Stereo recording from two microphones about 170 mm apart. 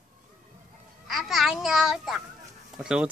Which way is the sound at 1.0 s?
Centre (ahead or behind).